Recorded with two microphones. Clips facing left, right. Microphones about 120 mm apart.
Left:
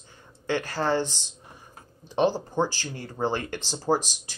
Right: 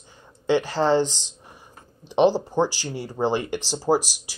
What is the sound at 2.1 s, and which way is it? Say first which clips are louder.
Speech: right 5 dB; 15° right (ahead or behind).